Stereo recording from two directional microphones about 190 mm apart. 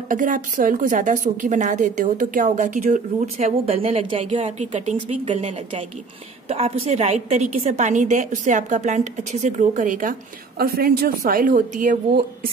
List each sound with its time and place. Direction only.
0.1 s a woman's voice: 45° right (ahead or behind)